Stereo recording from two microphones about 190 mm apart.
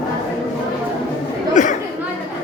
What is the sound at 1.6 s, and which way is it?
Chatter, 40° left (ahead or behind).